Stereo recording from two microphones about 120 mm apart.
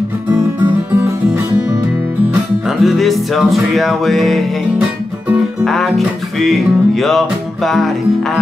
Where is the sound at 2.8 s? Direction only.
Centre (ahead or behind).